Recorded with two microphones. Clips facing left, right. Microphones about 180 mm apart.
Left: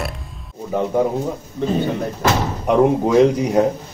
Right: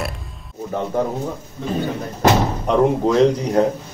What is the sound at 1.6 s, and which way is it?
Speech, 75° left (ahead or behind).